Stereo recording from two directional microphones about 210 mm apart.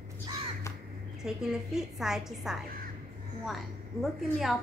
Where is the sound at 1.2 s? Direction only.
5° right (ahead or behind).